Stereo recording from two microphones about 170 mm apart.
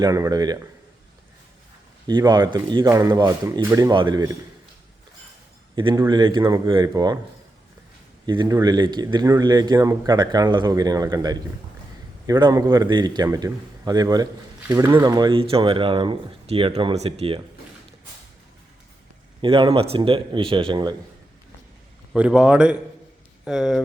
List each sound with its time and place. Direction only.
0.0 s speech: 20° right (ahead or behind)
2.0 s speech: 25° right (ahead or behind)
5.7 s a man's voice: 30° right (ahead or behind)
8.3 s speech: 25° right (ahead or behind)
19.4 s speech: 30° right (ahead or behind)
22.1 s a man's voice: 5° right (ahead or behind)